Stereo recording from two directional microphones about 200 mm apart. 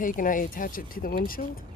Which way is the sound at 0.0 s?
40° left (ahead or behind).